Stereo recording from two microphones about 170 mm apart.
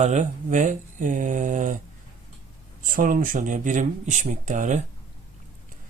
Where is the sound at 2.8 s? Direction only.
55° right (ahead or behind).